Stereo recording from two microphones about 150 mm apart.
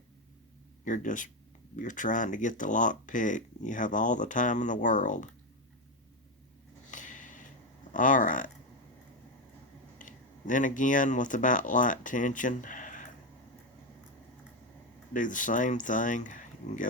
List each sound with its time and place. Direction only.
0.9 s speech: 55° left (ahead or behind)
6.9 s a sound: 55° left (ahead or behind)
7.9 s speech: 60° left (ahead or behind)
10.0 s speech: 60° left (ahead or behind)
15.1 s speech: 60° left (ahead or behind)